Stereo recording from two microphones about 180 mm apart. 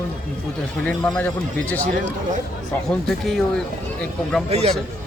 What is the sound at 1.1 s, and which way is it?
Speech, 10° left (ahead or behind).